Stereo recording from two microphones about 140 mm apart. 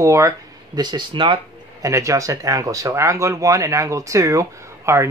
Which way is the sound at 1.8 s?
20° right (ahead or behind).